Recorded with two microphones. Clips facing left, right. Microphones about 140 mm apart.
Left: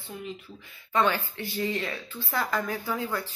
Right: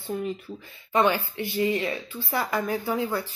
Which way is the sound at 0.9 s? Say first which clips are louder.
Right 3 dB; 10° right (ahead or behind).